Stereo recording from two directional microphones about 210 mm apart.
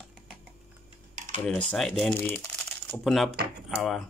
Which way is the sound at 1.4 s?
5° left (ahead or behind).